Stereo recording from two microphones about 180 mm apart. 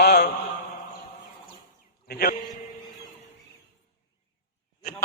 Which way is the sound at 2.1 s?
60° left (ahead or behind).